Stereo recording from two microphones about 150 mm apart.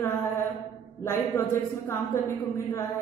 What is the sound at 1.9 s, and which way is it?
Speech, 20° left (ahead or behind).